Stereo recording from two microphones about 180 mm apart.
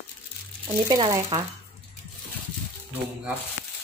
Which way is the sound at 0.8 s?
20° right (ahead or behind).